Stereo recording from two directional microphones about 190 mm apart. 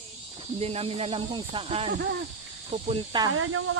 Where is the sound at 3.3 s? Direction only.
90° right.